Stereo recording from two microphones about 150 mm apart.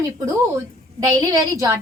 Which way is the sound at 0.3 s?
20° right (ahead or behind).